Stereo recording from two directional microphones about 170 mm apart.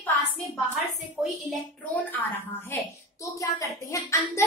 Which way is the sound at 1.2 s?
Centre (ahead or behind).